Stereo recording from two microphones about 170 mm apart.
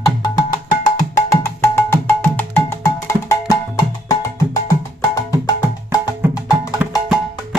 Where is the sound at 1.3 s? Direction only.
15° left (ahead or behind).